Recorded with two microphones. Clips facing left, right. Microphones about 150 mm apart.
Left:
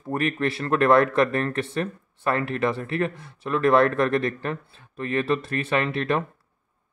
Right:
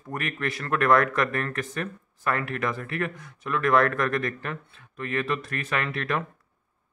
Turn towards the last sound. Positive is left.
turn(degrees=30)  # may be behind; listen again after turning